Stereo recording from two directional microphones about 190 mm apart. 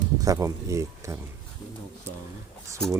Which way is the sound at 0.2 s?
15° right (ahead or behind).